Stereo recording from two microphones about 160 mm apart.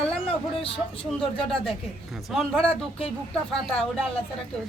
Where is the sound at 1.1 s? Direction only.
Centre (ahead or behind).